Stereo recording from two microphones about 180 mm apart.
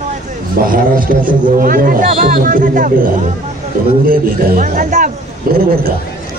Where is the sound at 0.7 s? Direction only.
50° right (ahead or behind).